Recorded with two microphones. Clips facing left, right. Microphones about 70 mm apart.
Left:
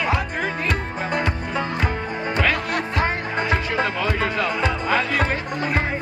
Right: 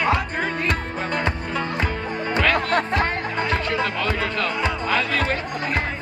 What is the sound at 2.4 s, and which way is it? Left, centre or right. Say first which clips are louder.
Music: right 3 dB; centre.